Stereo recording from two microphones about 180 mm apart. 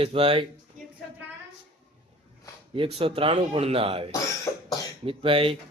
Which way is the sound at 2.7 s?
30° right (ahead or behind).